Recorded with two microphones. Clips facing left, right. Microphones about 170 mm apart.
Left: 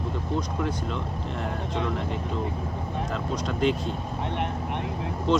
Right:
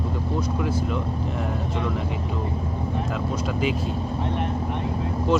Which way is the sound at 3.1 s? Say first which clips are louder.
Right 3 dB; 5° right (ahead or behind).